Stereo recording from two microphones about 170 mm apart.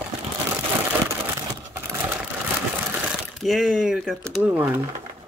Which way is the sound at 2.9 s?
Centre (ahead or behind).